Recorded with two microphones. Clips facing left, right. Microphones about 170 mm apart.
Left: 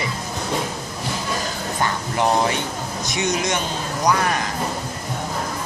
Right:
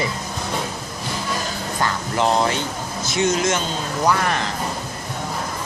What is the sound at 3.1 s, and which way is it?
Speech, 15° left (ahead or behind).